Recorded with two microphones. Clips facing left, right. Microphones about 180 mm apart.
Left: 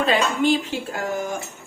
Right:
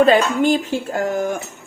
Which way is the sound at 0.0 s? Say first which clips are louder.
Right 6 dB; 45° right (ahead or behind).